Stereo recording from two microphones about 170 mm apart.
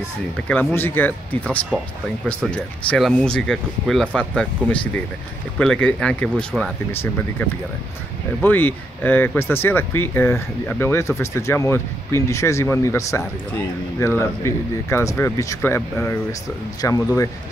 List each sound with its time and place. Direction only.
0.5 s speech: 10° left (ahead or behind)